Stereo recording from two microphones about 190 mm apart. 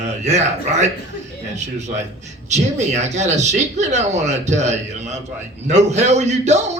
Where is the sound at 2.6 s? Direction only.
35° right (ahead or behind).